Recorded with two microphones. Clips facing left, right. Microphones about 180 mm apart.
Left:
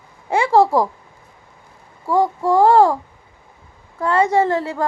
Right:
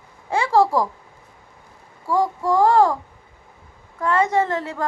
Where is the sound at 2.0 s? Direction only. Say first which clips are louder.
Left 3 dB; 25° left (ahead or behind).